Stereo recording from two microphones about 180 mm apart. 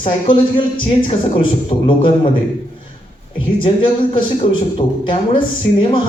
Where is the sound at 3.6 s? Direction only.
30° left (ahead or behind).